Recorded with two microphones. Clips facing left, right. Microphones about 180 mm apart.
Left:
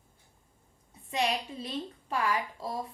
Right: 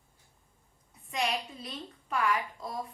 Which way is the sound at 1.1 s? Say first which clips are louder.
Left 2 dB; 30° left (ahead or behind).